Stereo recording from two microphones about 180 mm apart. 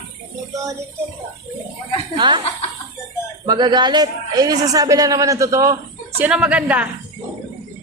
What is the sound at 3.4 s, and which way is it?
A man's voice, 25° right (ahead or behind).